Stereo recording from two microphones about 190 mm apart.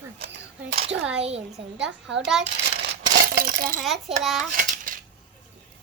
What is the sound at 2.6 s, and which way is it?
Crumpling, 60° right (ahead or behind).